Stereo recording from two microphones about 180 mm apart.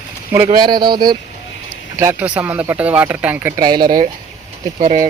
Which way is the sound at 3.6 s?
25° right (ahead or behind).